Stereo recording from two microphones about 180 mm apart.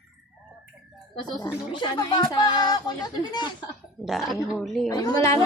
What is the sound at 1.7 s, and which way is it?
A woman's voice, 25° left (ahead or behind).